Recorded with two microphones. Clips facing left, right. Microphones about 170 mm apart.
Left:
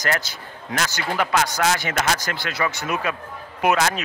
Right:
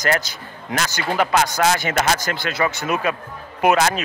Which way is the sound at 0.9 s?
30° right (ahead or behind).